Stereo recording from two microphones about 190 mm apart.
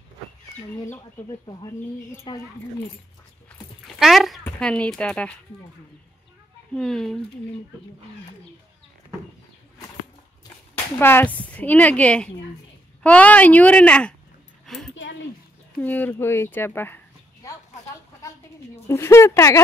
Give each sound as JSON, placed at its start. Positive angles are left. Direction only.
{"t": 2.3, "sound": "speech", "side_deg": 25}
{"t": 3.8, "sound": "a sound", "side_deg": 0}
{"t": 4.5, "sound": "speech", "side_deg": 5}
{"t": 6.7, "sound": "speech", "side_deg": 5}
{"t": 10.7, "sound": "speech", "side_deg": 10}
{"t": 14.7, "sound": "a sound", "side_deg": 0}
{"t": 15.8, "sound": "speech", "side_deg": 10}
{"t": 18.9, "sound": "speech", "side_deg": 15}